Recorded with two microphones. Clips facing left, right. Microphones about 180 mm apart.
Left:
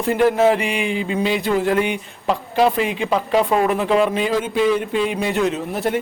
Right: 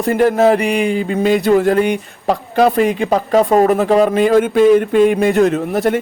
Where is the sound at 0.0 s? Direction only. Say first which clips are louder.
Right 3 dB; 45° right (ahead or behind).